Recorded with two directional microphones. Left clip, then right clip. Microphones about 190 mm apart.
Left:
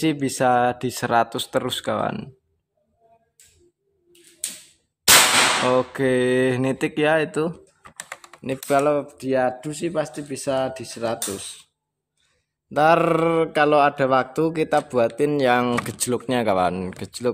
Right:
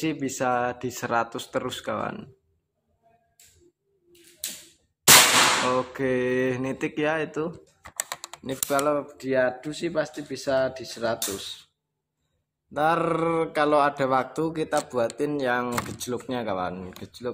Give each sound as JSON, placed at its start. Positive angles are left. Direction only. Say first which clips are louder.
{"t": 0.0, "sound": "speech", "louder": "left 6 dB", "side_deg": 35}
{"t": 5.7, "sound": "speech", "louder": "left 5 dB", "side_deg": 40}
{"t": 12.7, "sound": "speech", "louder": "left 6 dB", "side_deg": 45}